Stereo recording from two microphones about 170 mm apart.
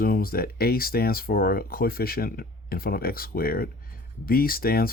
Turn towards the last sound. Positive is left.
turn(degrees=60)  # may be behind; listen again after turning